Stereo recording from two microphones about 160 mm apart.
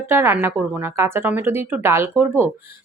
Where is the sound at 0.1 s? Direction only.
15° right (ahead or behind).